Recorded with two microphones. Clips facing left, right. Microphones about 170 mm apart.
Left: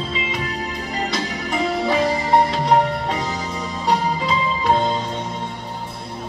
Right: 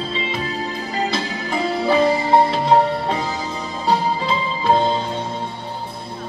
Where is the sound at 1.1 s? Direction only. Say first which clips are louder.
Right 1 dB; 30° right (ahead or behind).